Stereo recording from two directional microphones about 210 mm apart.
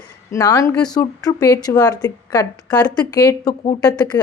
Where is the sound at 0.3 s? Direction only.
15° left (ahead or behind).